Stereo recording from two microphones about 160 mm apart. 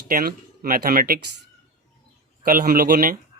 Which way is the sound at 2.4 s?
60° right (ahead or behind).